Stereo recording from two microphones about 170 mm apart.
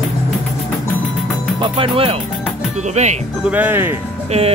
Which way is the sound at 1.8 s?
30° right (ahead or behind).